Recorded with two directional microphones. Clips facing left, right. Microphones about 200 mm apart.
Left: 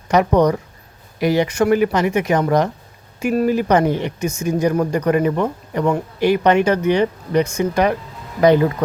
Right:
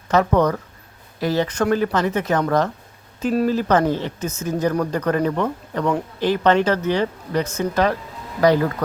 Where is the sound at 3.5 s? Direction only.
15° left (ahead or behind).